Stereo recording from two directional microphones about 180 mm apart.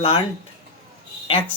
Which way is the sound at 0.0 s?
30° left (ahead or behind).